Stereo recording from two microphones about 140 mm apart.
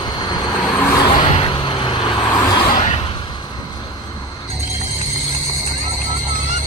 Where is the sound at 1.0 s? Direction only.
35° left (ahead or behind).